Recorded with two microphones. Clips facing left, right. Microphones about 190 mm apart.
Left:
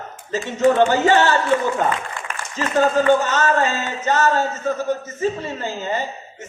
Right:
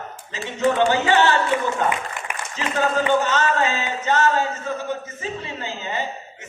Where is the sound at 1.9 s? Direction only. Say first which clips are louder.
Left 1 dB; 15° right (ahead or behind).